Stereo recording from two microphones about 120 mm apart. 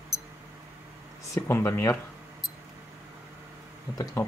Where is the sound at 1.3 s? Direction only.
20° left (ahead or behind).